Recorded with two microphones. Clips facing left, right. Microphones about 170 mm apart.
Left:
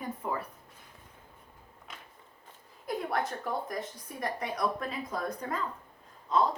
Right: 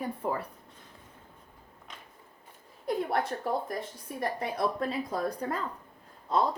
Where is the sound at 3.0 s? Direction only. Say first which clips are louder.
Right 2 dB; 30° right (ahead or behind).